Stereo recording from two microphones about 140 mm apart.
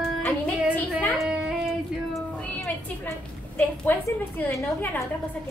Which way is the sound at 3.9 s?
15° left (ahead or behind).